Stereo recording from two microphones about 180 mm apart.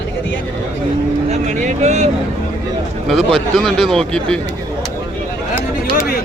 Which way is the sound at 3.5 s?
Centre (ahead or behind).